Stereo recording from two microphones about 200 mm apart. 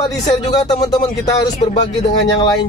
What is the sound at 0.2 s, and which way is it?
Speech, 20° left (ahead or behind).